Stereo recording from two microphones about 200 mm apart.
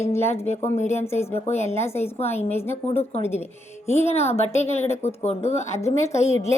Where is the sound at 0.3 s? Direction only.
30° left (ahead or behind).